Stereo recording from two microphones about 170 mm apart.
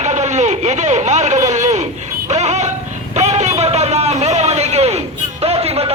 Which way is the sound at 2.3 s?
40° right (ahead or behind).